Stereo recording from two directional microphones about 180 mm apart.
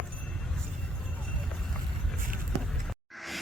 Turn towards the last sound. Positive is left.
turn(degrees=0)  # may be behind; listen again after turning